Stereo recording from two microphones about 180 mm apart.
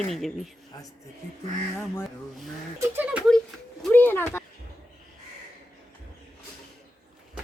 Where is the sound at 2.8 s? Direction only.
10° right (ahead or behind).